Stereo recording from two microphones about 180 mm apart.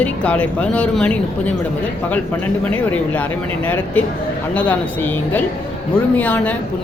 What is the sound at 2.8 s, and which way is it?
Speech, 10° left (ahead or behind).